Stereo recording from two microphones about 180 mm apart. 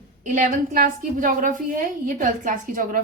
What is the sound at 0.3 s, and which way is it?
A woman's voice, 50° right (ahead or behind).